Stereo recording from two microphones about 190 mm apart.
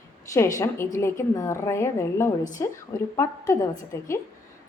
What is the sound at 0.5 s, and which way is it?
A woman's voice, 15° left (ahead or behind).